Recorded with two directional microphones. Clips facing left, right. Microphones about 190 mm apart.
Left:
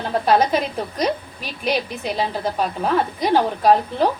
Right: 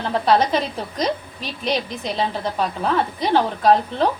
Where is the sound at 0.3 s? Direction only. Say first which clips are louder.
Left 1 dB; 10° left (ahead or behind).